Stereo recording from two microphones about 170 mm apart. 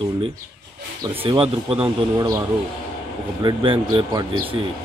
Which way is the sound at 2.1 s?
20° right (ahead or behind).